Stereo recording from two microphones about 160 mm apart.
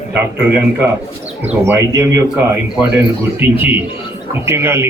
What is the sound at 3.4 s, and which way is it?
A man's voice, 10° right (ahead or behind).